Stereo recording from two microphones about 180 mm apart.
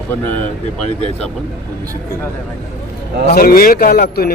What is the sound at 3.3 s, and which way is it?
A man's voice, 55° left (ahead or behind).